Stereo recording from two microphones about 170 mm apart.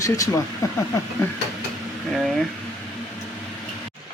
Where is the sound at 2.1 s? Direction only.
Centre (ahead or behind).